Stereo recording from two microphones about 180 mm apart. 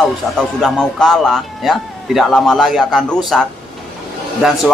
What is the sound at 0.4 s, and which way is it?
A man's voice, 5° left (ahead or behind).